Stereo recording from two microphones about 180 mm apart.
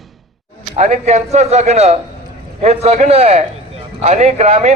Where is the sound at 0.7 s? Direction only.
40° right (ahead or behind).